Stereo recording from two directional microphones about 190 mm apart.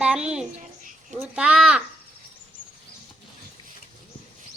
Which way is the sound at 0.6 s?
40° right (ahead or behind).